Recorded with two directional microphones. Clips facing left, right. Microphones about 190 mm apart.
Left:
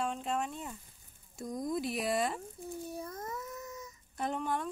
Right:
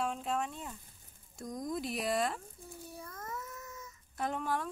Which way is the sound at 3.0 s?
20° left (ahead or behind).